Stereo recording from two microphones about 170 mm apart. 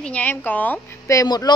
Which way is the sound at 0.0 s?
10° left (ahead or behind).